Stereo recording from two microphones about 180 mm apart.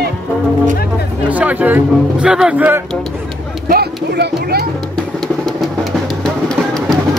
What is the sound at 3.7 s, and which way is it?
Music, 60° right (ahead or behind).